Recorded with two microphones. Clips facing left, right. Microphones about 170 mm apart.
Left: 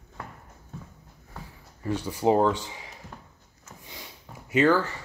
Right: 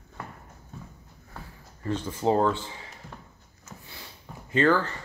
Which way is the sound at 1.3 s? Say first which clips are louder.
Even; 10° left (ahead or behind).